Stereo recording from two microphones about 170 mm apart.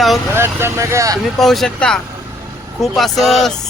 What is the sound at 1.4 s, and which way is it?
A man's voice, centre (ahead or behind).